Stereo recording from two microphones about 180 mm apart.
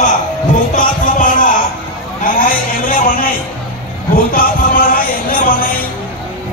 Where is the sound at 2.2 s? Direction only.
50° left (ahead or behind).